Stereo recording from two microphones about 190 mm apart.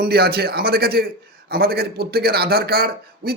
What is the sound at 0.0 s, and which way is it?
A man's voice, 55° right (ahead or behind).